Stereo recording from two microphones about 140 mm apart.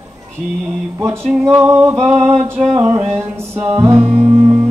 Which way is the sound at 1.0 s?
15° right (ahead or behind).